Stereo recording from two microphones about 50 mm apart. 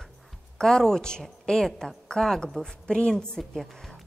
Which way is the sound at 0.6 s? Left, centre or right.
Centre.